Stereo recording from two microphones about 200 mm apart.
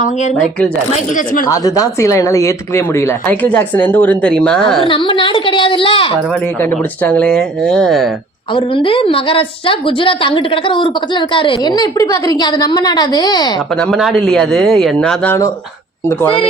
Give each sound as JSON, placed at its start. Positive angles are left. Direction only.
{"t": 0.0, "sound": "speech", "side_deg": 35}
{"t": 1.5, "sound": "speech", "side_deg": 15}
{"t": 4.8, "sound": "speech", "side_deg": 25}
{"t": 6.6, "sound": "speech", "side_deg": 10}
{"t": 8.5, "sound": "speech", "side_deg": 25}
{"t": 13.7, "sound": "speech", "side_deg": 5}